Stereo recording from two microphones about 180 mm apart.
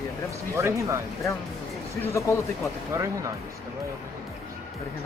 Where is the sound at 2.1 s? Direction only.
15° left (ahead or behind).